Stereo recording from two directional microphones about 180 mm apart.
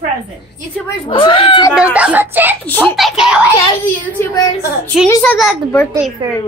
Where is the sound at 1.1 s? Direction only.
30° left (ahead or behind).